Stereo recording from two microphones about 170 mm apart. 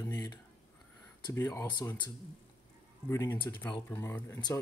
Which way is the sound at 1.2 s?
20° left (ahead or behind).